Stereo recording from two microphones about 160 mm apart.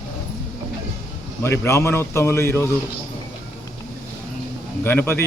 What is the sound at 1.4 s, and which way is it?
Speech, 15° left (ahead or behind).